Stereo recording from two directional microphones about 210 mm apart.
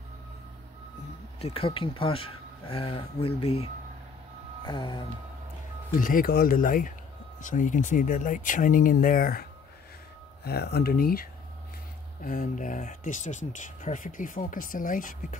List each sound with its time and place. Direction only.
1.4 s speech: 25° left (ahead or behind)
5.9 s speech: 40° left (ahead or behind)
10.4 s speech: 50° left (ahead or behind)